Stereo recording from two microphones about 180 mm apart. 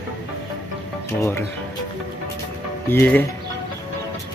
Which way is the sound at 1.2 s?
15° left (ahead or behind).